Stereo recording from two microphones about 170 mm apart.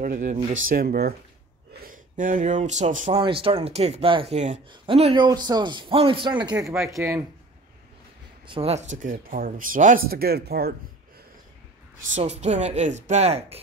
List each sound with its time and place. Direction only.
0.0 s speech: 50° right (ahead or behind)
1.8 s speech: 55° right (ahead or behind)
3.1 s speech: 30° right (ahead or behind)
6.5 s speech: 15° right (ahead or behind)
8.5 s speech: 35° right (ahead or behind)
9.0 s speech: 55° right (ahead or behind)
12.2 s speech: 40° right (ahead or behind)